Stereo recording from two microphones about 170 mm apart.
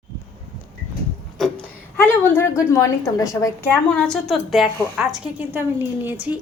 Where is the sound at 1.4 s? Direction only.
10° left (ahead or behind).